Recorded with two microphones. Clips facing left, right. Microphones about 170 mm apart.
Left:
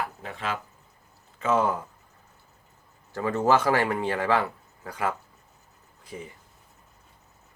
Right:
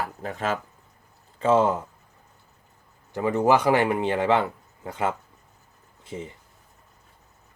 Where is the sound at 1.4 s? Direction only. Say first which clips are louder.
Right 4 dB; 30° right (ahead or behind).